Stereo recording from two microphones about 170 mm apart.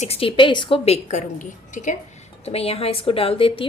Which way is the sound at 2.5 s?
35° left (ahead or behind).